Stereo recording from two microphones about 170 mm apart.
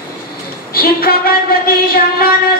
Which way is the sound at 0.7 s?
65° left (ahead or behind).